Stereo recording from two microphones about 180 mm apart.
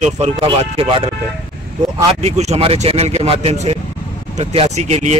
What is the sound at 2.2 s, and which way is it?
Speech, 35° right (ahead or behind).